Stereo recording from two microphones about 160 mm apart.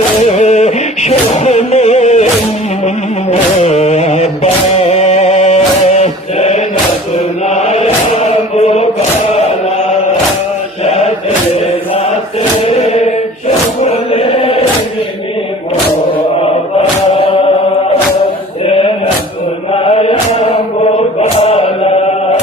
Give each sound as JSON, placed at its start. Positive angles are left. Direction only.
{"t": 0.3, "sound": "music", "side_deg": 45}
{"t": 3.6, "sound": "music", "side_deg": 45}
{"t": 7.4, "sound": "chant", "side_deg": 45}
{"t": 10.8, "sound": "chant", "side_deg": 45}
{"t": 11.5, "sound": "music", "side_deg": 40}
{"t": 13.8, "sound": "chant", "side_deg": 35}
{"t": 18.6, "sound": "male singing", "side_deg": 35}
{"t": 19.7, "sound": "mantra", "side_deg": 40}
{"t": 21.2, "sound": "music", "side_deg": 40}